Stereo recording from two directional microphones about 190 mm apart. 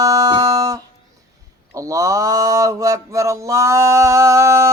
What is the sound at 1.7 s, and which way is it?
Mantra, 15° right (ahead or behind).